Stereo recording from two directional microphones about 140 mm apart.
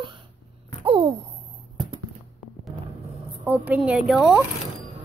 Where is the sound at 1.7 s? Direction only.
30° right (ahead or behind).